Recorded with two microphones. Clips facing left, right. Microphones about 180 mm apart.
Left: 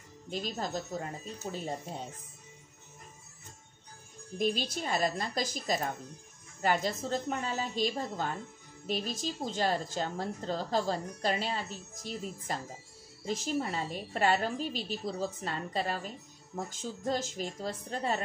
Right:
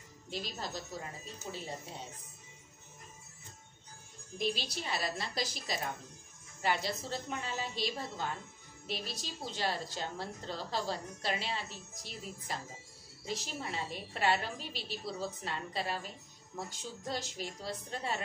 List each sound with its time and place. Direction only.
0.3 s a woman's voice: 45° left (ahead or behind)
4.4 s a woman's voice: 45° left (ahead or behind)